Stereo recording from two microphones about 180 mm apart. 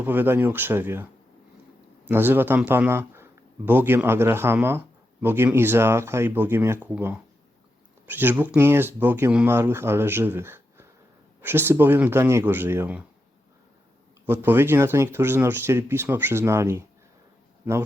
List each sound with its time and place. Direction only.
0.0 s speech: 10° right (ahead or behind)
2.0 s speech: 10° right (ahead or behind)
14.3 s speech: 10° right (ahead or behind)